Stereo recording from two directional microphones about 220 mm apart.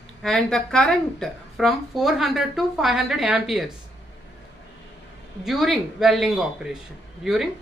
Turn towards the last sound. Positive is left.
turn(degrees=0)  # may be behind; listen again after turning